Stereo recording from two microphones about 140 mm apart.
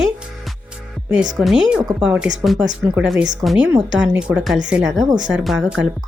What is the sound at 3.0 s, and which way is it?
A woman's voice, 5° right (ahead or behind).